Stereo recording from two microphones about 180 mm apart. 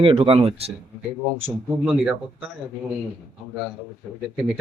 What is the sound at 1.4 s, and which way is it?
Speech, 5° right (ahead or behind).